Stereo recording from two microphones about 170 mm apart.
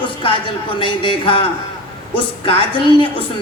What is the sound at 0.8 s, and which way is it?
A man's voice, 30° left (ahead or behind).